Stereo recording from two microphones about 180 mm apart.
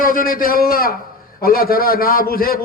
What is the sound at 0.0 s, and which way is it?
A man's voice, 50° left (ahead or behind).